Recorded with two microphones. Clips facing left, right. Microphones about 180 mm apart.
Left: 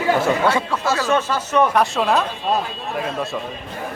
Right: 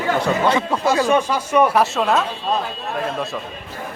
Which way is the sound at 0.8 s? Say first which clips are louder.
Right 4 dB; 15° right (ahead or behind).